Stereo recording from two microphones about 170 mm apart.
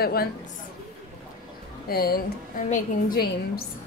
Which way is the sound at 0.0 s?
65° left (ahead or behind).